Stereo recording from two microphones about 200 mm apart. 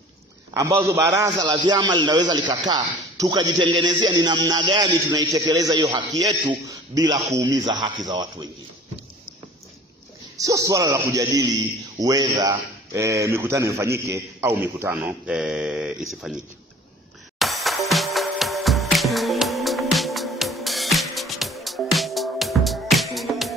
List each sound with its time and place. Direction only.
0.6 s a man's voice: 15° right (ahead or behind)
10.3 s a man's voice: 15° right (ahead or behind)
17.4 s music: centre (ahead or behind)